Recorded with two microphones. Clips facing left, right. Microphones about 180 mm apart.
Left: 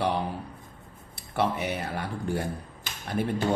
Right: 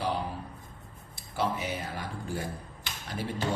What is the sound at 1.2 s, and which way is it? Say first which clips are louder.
Speech: left 4 dB; 65° left (ahead or behind).